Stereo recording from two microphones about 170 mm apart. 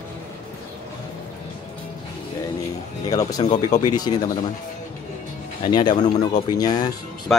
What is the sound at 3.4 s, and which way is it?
Speech, 45° left (ahead or behind).